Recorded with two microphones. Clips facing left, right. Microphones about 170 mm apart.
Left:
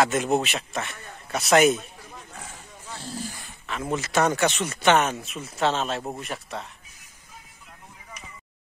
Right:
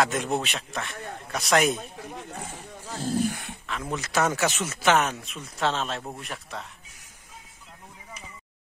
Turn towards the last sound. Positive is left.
turn(degrees=0)  # may be behind; listen again after turning